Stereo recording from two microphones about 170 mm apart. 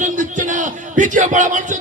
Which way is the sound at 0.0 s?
45° right (ahead or behind).